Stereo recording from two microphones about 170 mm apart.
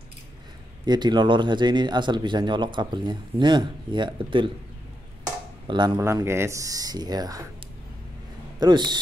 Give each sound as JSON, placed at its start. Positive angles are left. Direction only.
{"t": 0.8, "sound": "speech", "side_deg": -25}
{"t": 5.7, "sound": "speech", "side_deg": -25}
{"t": 5.9, "sound": "speech", "side_deg": -15}
{"t": 8.5, "sound": "speech", "side_deg": -25}